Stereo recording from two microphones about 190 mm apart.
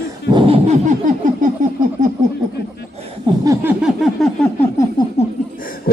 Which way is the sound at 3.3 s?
25° right (ahead or behind).